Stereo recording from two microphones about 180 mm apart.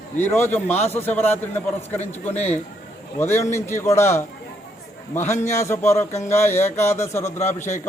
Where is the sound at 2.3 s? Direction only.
40° left (ahead or behind).